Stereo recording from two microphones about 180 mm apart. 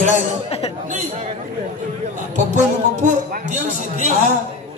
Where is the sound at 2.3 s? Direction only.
40° right (ahead or behind).